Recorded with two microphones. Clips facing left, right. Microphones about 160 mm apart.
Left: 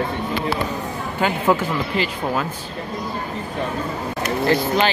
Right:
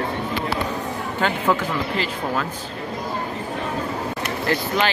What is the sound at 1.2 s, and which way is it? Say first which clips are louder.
Speech: left 3 dB; 10° left (ahead or behind).